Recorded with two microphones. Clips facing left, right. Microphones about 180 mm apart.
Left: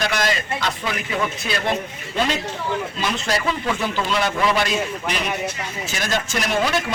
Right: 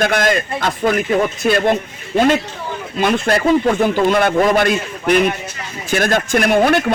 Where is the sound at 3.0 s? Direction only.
55° right (ahead or behind).